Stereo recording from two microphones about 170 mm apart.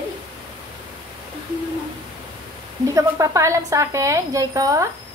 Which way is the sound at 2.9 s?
20° right (ahead or behind).